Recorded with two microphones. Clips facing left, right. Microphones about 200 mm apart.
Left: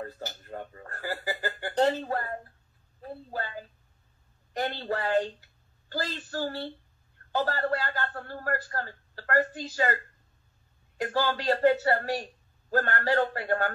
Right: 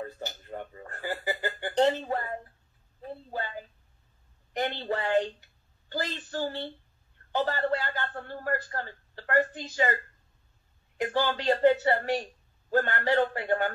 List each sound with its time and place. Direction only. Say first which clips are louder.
0.0 s a sound: right 1 dB; 20° right (ahead or behind)
4.6 s a woman's voice: even; 20° right (ahead or behind)
11.0 s a man's voice: even; 20° right (ahead or behind)